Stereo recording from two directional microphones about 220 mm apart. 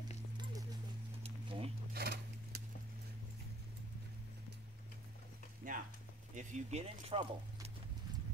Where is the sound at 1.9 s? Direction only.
45° right (ahead or behind).